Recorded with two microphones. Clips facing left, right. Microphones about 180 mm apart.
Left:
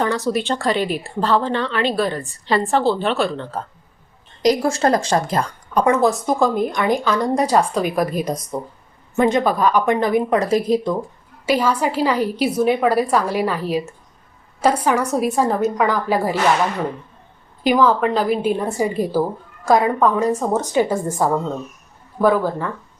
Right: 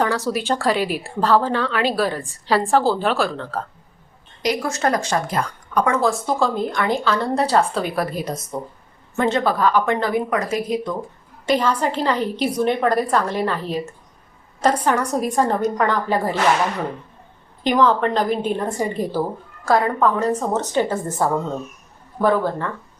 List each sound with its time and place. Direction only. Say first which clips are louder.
0.3 s a woman's voice: even; 10° right (ahead or behind)
4.6 s speech: left 4 dB; 30° left (ahead or behind)
11.4 s speech: left 1 dB; 10° left (ahead or behind)
17.6 s speech: left 1 dB; 10° left (ahead or behind)